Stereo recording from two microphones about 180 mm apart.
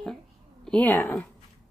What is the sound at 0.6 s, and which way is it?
Speech, 5° left (ahead or behind).